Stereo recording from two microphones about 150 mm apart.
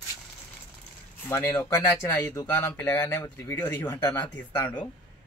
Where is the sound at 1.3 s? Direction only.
15° left (ahead or behind).